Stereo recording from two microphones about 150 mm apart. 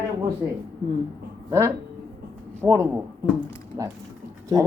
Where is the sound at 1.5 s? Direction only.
20° right (ahead or behind).